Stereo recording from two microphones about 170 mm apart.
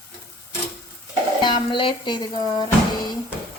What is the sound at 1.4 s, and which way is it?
A woman's voice, 30° left (ahead or behind).